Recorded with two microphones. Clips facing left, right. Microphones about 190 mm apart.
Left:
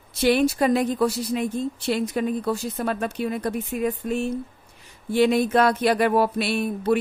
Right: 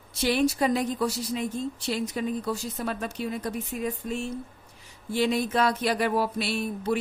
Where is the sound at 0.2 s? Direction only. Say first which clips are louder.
Left 4 dB; 60° left (ahead or behind).